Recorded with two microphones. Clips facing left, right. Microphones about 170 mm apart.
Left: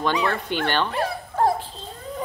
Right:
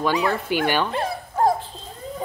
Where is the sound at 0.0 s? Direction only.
10° right (ahead or behind).